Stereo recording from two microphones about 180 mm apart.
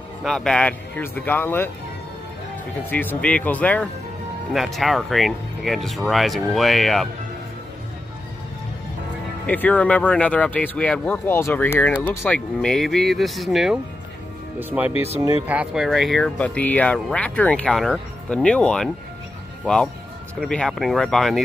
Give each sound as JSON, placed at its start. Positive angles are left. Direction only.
{"t": 0.2, "sound": "speech", "side_deg": 0}
{"t": 2.9, "sound": "speech", "side_deg": 10}
{"t": 9.5, "sound": "a man's voice", "side_deg": 10}